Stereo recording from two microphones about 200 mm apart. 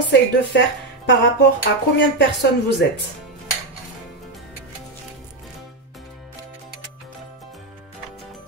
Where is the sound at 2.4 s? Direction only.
60° left (ahead or behind).